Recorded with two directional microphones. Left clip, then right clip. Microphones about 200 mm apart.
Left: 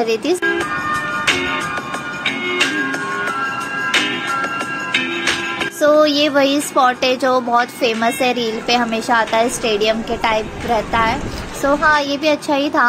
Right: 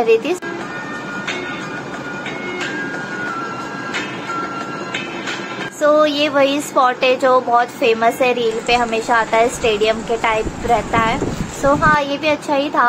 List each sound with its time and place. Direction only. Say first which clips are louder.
0.0 s speech: right 3 dB; 25° left (ahead or behind)
5.8 s speech: left 1 dB; 25° left (ahead or behind)